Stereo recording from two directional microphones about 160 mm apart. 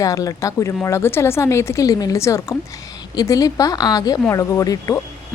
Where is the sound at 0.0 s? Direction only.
20° left (ahead or behind).